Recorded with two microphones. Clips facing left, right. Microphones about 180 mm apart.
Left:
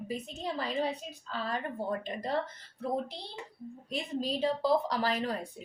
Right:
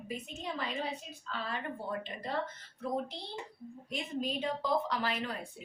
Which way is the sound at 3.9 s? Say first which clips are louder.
Left 2 dB; 35° left (ahead or behind).